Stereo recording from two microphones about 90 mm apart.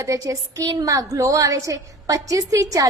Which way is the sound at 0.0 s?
35° right (ahead or behind).